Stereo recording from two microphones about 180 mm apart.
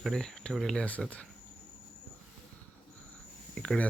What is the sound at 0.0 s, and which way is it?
Speech, centre (ahead or behind).